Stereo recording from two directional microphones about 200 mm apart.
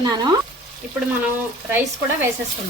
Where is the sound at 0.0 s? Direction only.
20° right (ahead or behind).